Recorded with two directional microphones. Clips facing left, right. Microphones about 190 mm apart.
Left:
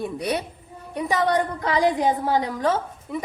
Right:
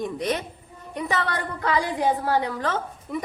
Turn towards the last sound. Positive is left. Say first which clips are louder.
# left 1 dB
turn(degrees=10)  # may be behind; listen again after turning